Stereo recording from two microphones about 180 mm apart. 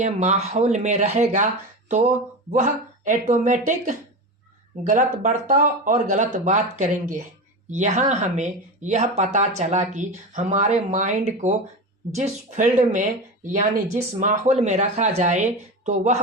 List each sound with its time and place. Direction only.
0.0 s speech: 40° right (ahead or behind)